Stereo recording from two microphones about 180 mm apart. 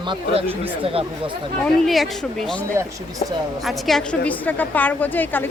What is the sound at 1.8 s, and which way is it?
A woman's voice, centre (ahead or behind).